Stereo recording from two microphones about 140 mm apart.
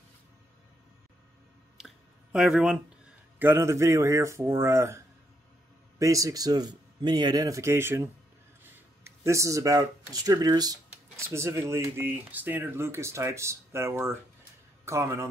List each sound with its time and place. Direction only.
1.8 s a sound: 5° right (ahead or behind)
2.3 s speech: 5° right (ahead or behind)
3.3 s speech: 15° right (ahead or behind)